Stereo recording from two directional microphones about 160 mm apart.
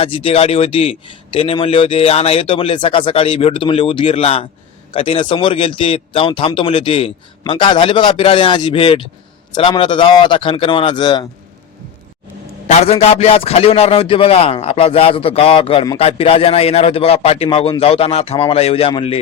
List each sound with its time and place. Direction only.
0.0 s speech: 35° left (ahead or behind)
12.6 s speech: 40° left (ahead or behind)